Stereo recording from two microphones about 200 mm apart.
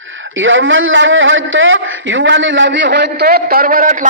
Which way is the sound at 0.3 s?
75° right (ahead or behind).